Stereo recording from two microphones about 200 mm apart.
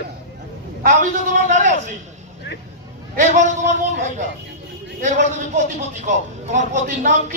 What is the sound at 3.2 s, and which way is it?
Speech, 40° right (ahead or behind).